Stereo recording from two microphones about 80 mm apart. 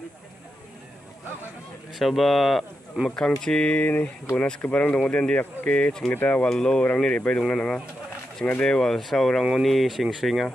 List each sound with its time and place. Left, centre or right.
2.0 s speech: centre